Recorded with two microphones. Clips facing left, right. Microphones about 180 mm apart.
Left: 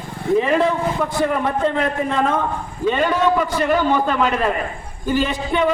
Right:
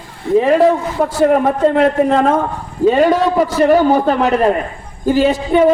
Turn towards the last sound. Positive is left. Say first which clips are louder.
# right 8 dB
turn(degrees=-45)  # may be behind; listen again after turning